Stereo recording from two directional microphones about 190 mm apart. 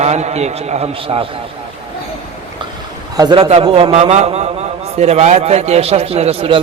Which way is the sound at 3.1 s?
25° right (ahead or behind).